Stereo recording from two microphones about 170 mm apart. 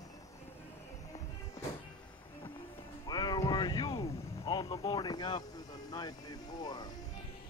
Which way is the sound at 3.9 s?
20° left (ahead or behind).